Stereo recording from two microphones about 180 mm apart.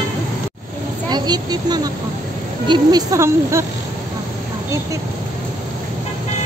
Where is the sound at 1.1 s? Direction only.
25° right (ahead or behind).